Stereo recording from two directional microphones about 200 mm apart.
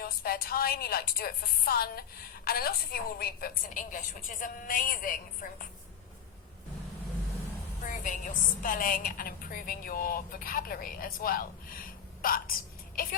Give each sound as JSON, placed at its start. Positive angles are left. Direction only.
{"t": 0.0, "sound": "a woman's voice", "side_deg": 50}
{"t": 7.9, "sound": "a woman's voice", "side_deg": 40}